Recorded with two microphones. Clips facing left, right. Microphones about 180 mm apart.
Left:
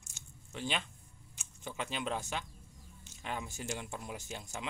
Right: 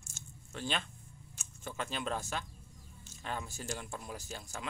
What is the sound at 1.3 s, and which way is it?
Speech, 15° left (ahead or behind).